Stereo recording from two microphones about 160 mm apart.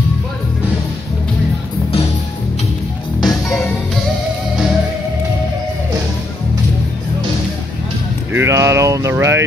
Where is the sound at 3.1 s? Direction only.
20° left (ahead or behind).